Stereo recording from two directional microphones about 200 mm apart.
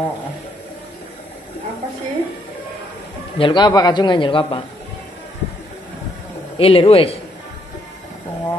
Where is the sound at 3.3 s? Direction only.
25° left (ahead or behind).